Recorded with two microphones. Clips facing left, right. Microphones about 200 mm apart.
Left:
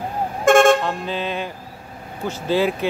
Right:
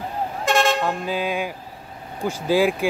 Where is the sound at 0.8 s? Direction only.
5° right (ahead or behind).